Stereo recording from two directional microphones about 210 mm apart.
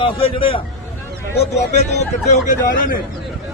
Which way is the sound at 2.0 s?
35° left (ahead or behind).